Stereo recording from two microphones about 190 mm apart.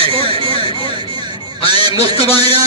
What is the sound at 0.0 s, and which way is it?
Speech, 30° right (ahead or behind).